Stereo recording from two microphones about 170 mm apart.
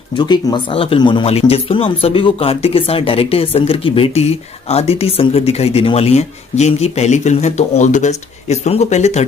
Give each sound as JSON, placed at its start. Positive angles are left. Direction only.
{"t": 0.2, "sound": "speech", "side_deg": 25}